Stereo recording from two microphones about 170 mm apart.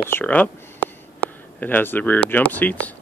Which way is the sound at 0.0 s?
10° left (ahead or behind).